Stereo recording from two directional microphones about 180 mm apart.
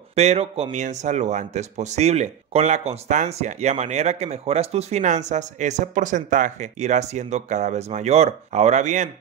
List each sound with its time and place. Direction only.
0.1 s speech: 35° right (ahead or behind)